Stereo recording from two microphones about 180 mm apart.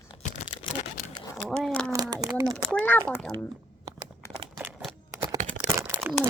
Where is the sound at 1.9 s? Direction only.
20° right (ahead or behind).